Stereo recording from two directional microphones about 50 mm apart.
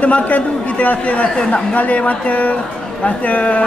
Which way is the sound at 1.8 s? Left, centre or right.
Left.